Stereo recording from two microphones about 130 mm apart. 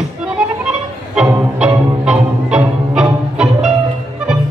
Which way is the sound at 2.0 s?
5° right (ahead or behind).